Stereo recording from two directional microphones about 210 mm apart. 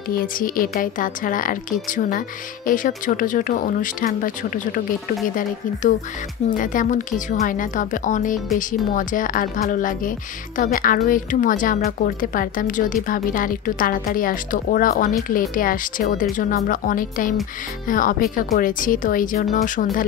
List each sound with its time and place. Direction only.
0.2 s a woman's voice: 40° left (ahead or behind)